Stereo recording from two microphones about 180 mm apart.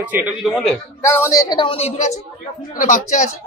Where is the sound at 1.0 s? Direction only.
15° left (ahead or behind); by 3.2 s 45° left (ahead or behind).